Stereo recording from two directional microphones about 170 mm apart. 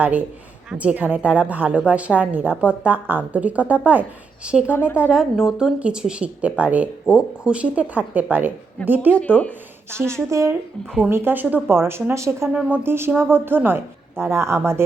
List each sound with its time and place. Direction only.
0.0 s speech: 10° right (ahead or behind)
4.7 s speech: 10° left (ahead or behind)
4.9 s speech: 5° right (ahead or behind)
9.1 s speech: 10° left (ahead or behind)
10.2 s speech: 15° right (ahead or behind)